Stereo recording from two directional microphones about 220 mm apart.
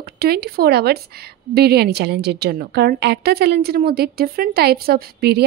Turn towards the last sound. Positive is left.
turn(degrees=-45)  # may be behind; listen again after turning